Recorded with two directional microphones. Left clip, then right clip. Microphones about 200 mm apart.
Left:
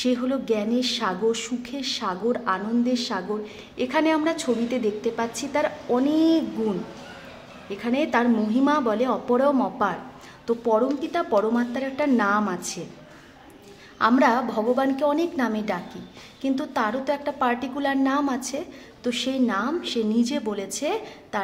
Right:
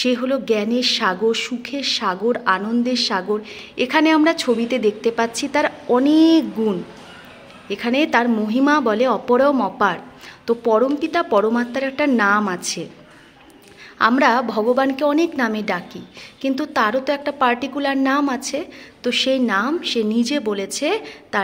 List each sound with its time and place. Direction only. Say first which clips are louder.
0.0 s a woman's voice: right 5 dB; 20° right (ahead or behind)
7.7 s a woman's voice: right 6 dB; 20° right (ahead or behind)
13.9 s a woman's voice: right 4 dB; 20° right (ahead or behind)